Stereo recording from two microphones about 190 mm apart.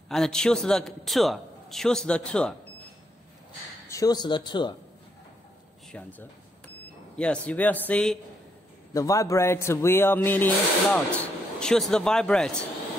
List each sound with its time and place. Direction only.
0.1 s a man's voice: 5° left (ahead or behind)
3.9 s speech: 20° left (ahead or behind)
5.9 s speech: 5° left (ahead or behind)
8.9 s speech: 15° left (ahead or behind)